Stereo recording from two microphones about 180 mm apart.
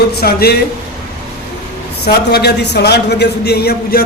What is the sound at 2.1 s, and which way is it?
A man's voice, 65° left (ahead or behind).